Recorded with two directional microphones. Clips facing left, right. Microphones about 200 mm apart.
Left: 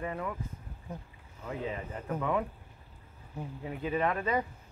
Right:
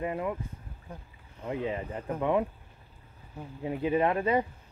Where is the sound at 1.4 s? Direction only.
25° right (ahead or behind).